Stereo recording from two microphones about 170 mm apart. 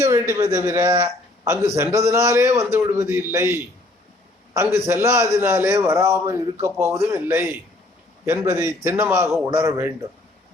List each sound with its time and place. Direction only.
0.0 s a man's voice: 15° right (ahead or behind)